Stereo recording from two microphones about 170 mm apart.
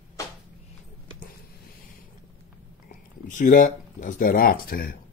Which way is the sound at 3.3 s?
50° left (ahead or behind).